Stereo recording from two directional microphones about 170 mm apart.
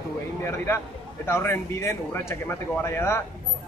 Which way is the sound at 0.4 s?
15° left (ahead or behind).